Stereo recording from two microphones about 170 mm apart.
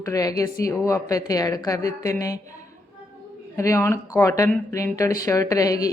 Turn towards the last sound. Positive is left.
turn(degrees=20)  # may be behind; listen again after turning